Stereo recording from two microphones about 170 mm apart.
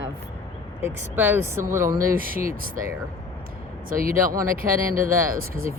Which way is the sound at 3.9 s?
55° right (ahead or behind).